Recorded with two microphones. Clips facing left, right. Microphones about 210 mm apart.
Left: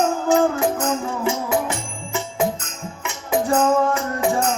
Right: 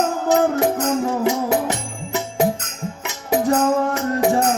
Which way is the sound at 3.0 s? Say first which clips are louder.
Right 2 dB; 40° right (ahead or behind).